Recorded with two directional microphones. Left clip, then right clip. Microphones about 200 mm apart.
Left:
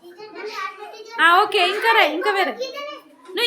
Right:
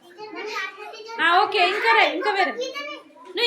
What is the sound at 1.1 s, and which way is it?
A woman's voice, 20° left (ahead or behind).